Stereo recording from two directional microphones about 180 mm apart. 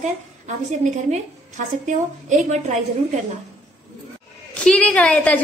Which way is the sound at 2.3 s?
40° right (ahead or behind).